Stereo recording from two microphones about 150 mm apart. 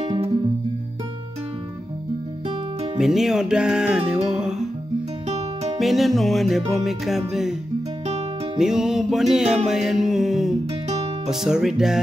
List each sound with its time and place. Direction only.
0.0 s music: 45° right (ahead or behind)
3.0 s music: 5° right (ahead or behind)
5.8 s music: centre (ahead or behind)
8.5 s music: 5° right (ahead or behind)